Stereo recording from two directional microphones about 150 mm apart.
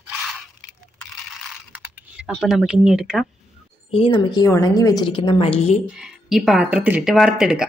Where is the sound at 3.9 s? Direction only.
40° left (ahead or behind).